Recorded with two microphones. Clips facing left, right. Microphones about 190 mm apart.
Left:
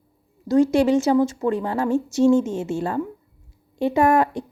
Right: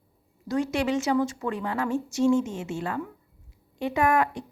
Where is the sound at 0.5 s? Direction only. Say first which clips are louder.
Left 9 dB; 30° left (ahead or behind).